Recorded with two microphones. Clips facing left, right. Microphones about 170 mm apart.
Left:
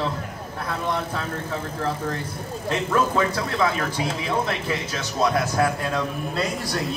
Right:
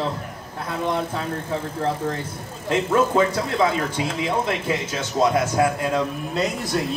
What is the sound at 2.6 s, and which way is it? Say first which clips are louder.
Speech: right 3 dB; 25° right (ahead or behind).